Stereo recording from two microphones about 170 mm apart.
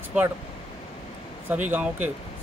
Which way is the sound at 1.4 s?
10° right (ahead or behind).